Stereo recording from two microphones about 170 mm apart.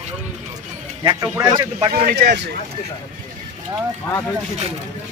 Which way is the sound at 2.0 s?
70° right (ahead or behind).